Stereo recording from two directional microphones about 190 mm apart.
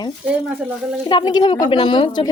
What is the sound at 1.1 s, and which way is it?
Speech, 20° left (ahead or behind).